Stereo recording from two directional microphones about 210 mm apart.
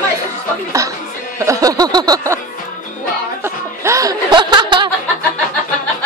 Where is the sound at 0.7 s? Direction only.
15° right (ahead or behind).